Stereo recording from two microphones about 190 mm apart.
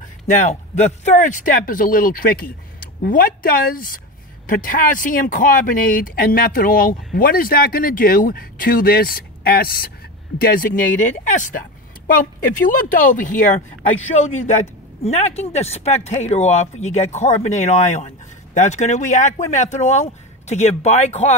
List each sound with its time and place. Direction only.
0.3 s speech: 40° left (ahead or behind)
12.7 s speech: 45° left (ahead or behind)